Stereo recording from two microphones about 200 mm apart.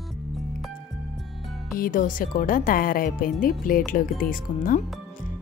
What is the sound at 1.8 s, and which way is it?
Speech, 45° left (ahead or behind).